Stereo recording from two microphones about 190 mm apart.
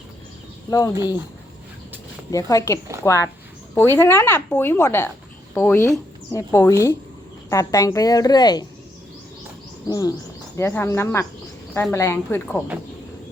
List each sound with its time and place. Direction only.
0.7 s a woman's voice: 20° left (ahead or behind)
2.3 s a woman's voice: 20° left (ahead or behind)
9.8 s a woman's voice: 20° left (ahead or behind)